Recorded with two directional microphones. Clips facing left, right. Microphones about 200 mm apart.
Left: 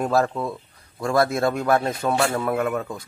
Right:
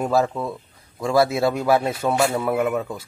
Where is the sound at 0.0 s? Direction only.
5° right (ahead or behind).